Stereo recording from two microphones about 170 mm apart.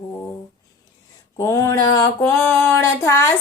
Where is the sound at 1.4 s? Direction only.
20° left (ahead or behind).